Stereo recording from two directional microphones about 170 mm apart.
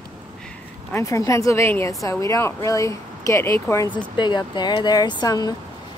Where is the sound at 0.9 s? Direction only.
20° left (ahead or behind).